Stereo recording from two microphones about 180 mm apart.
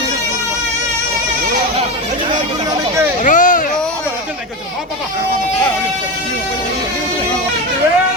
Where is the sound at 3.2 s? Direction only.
45° left (ahead or behind).